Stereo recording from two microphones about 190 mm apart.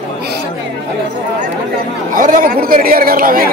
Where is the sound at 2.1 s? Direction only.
45° right (ahead or behind).